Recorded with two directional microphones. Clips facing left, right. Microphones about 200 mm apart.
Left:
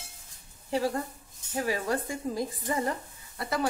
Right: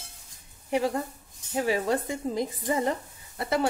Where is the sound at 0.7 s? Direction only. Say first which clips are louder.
Right 2 dB; 20° right (ahead or behind).